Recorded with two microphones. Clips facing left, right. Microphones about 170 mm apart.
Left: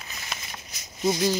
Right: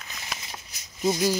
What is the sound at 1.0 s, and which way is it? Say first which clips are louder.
Speech: even; 5° right (ahead or behind).